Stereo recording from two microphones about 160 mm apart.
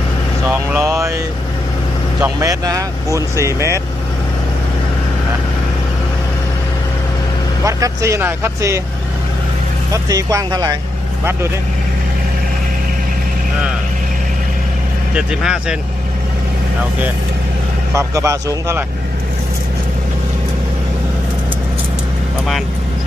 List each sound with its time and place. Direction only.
0.5 s speech: 15° right (ahead or behind)
2.4 s speech: 20° right (ahead or behind)
7.6 s speech: 20° right (ahead or behind)
9.9 s speech: 20° right (ahead or behind)
15.1 s speech: 5° right (ahead or behind)
17.9 s speech: 20° right (ahead or behind)